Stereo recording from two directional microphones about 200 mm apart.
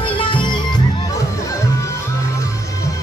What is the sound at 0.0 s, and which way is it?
Music, 25° left (ahead or behind).